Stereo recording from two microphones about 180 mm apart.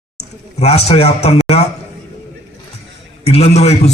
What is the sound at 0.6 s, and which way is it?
A man's voice, 35° left (ahead or behind).